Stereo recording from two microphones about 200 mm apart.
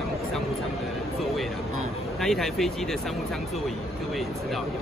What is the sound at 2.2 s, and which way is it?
Speech, centre (ahead or behind).